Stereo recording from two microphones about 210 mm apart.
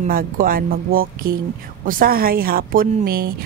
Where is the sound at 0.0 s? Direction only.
45° right (ahead or behind).